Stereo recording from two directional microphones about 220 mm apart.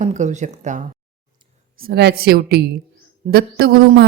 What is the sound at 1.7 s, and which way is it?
Speech, 45° right (ahead or behind).